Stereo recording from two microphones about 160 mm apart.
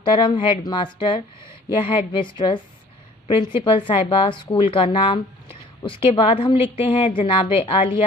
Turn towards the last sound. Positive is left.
turn(degrees=35)  # may be behind; listen again after turning